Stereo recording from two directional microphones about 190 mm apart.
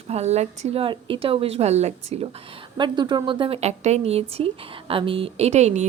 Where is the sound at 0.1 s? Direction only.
35° right (ahead or behind).